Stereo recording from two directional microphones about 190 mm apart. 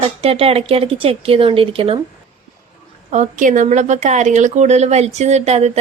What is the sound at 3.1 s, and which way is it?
A woman's voice, 40° right (ahead or behind).